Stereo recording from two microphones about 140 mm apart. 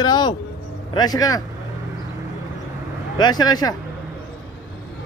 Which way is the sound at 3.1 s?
30° left (ahead or behind).